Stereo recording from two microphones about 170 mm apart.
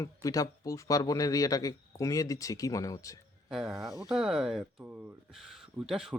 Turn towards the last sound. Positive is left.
turn(degrees=0)  # may be behind; listen again after turning